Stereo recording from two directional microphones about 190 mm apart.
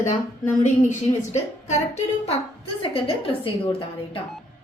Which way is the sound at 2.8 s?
30° left (ahead or behind).